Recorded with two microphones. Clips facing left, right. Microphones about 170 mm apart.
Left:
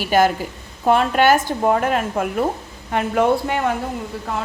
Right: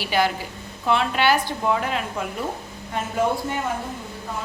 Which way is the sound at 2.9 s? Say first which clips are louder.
Left 6 dB; 70° left (ahead or behind).